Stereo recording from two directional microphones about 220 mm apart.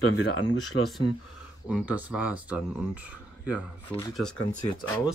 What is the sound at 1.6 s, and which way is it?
Speech, 5° right (ahead or behind).